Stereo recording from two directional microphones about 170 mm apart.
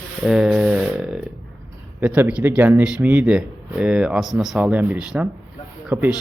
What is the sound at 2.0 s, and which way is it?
Speech, 10° right (ahead or behind).